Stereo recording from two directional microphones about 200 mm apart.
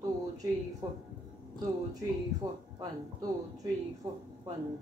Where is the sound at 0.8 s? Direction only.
20° right (ahead or behind).